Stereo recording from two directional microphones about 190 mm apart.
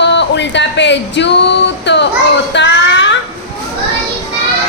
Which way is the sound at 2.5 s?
70° left (ahead or behind).